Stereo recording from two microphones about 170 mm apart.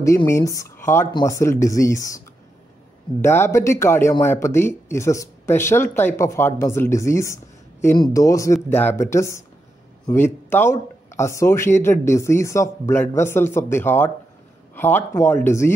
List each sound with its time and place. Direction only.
0.0 s speech: 20° left (ahead or behind)